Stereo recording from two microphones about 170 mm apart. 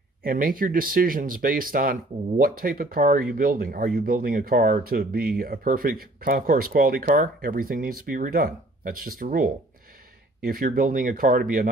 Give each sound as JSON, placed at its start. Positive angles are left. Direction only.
{"t": 0.2, "sound": "speech", "side_deg": -55}